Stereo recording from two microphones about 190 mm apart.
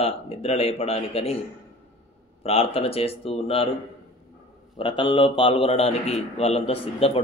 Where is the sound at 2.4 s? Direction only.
30° left (ahead or behind).